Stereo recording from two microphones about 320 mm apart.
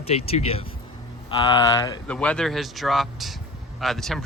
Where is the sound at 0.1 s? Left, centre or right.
Centre.